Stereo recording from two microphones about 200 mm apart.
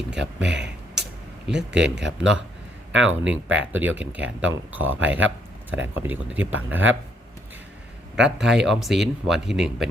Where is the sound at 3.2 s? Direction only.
5° right (ahead or behind).